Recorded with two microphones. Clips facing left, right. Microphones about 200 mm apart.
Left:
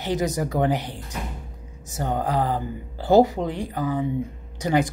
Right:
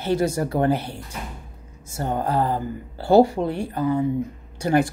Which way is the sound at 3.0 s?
15° left (ahead or behind).